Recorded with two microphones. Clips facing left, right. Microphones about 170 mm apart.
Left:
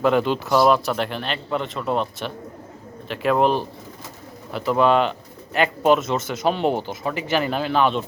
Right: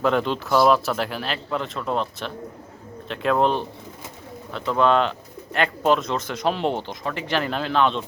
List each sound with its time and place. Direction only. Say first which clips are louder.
0.0 s speech: left 3 dB; 5° left (ahead or behind)